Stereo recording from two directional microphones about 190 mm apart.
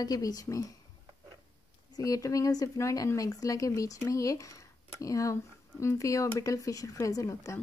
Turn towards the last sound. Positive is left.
turn(degrees=15)  # may be behind; listen again after turning